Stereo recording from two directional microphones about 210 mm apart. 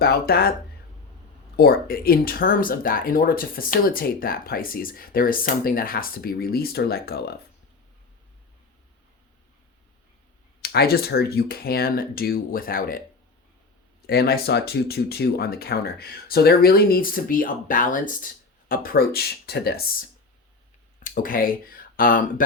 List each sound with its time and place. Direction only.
0.0 s speech: 45° left (ahead or behind)
1.5 s speech: 45° left (ahead or behind)
10.6 s speech: 50° left (ahead or behind)
14.1 s speech: 50° left (ahead or behind)